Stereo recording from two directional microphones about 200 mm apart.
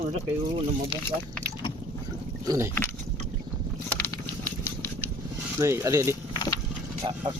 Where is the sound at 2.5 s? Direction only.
15° right (ahead or behind).